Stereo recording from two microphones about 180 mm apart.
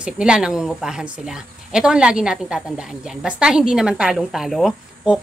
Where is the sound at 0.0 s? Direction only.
5° right (ahead or behind).